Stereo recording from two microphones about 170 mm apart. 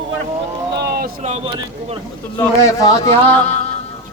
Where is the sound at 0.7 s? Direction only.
75° right (ahead or behind).